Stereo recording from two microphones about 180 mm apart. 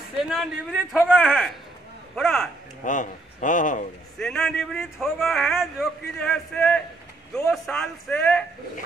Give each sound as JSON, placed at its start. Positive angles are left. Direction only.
{"t": 0.3, "sound": "speech", "side_deg": 0}
{"t": 2.8, "sound": "a man's voice", "side_deg": 45}
{"t": 4.2, "sound": "speech", "side_deg": 5}